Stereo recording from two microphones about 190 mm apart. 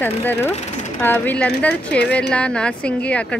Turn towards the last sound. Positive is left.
turn(degrees=5)  # may be behind; listen again after turning